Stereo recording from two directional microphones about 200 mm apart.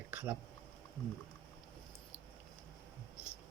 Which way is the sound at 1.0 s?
15° left (ahead or behind).